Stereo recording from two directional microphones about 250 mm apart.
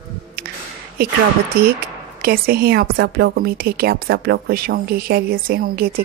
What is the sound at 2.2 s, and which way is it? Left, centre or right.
A woman's voice, right.